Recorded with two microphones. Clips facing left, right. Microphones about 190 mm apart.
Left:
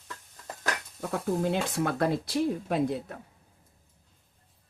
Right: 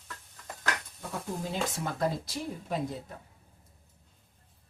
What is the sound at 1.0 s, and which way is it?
Speech, 65° left (ahead or behind).